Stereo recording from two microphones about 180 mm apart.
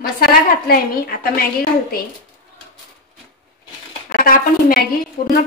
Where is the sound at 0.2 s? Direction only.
55° left (ahead or behind).